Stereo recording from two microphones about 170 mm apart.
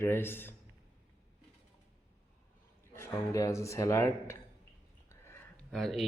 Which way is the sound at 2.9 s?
15° left (ahead or behind).